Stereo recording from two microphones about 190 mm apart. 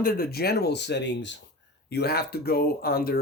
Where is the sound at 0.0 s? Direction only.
55° left (ahead or behind); by 1.4 s 70° left (ahead or behind).